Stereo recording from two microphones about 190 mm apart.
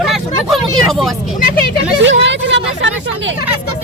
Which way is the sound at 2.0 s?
70° right (ahead or behind).